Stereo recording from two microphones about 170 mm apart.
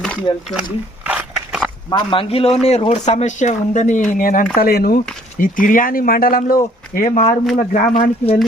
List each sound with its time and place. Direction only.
0.3 s speech: 35° left (ahead or behind)
1.0 s biting: 5° right (ahead or behind)
1.9 s speech: 30° left (ahead or behind); by 8.1 s 50° left (ahead or behind)